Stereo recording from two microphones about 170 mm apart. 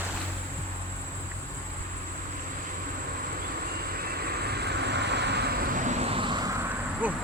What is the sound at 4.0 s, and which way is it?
Vehicle, 65° right (ahead or behind).